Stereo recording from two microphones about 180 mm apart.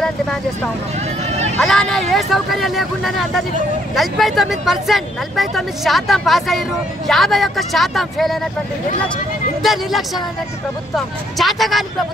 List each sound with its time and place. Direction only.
1.6 s speech: centre (ahead or behind)
9.6 s speech: centre (ahead or behind)